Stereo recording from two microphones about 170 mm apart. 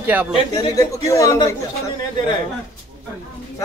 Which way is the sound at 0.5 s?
20° left (ahead or behind).